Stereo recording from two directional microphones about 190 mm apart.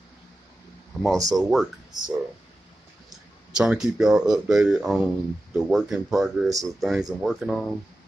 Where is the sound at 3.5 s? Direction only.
Centre (ahead or behind).